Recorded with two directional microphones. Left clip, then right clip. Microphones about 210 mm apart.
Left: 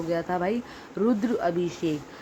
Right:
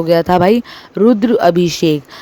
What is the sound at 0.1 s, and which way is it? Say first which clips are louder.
Speech: right 17 dB; 45° right (ahead or behind).